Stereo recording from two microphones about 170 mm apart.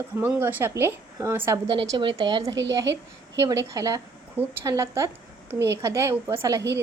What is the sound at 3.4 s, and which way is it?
A woman's voice, 20° right (ahead or behind).